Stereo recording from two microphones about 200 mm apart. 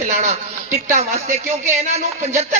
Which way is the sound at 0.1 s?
35° right (ahead or behind).